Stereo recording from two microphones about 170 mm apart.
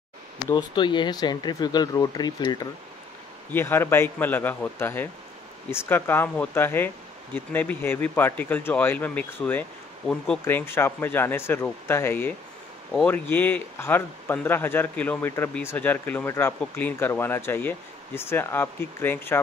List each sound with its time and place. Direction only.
0.5 s speech: 25° left (ahead or behind)
3.5 s a man's voice: 15° left (ahead or behind)